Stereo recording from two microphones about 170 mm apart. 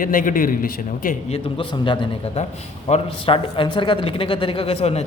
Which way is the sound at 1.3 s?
30° left (ahead or behind).